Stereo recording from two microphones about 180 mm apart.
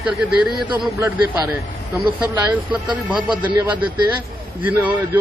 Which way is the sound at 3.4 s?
10° right (ahead or behind).